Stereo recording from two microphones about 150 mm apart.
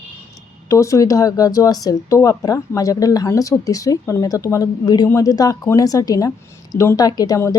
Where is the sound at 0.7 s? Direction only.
20° left (ahead or behind).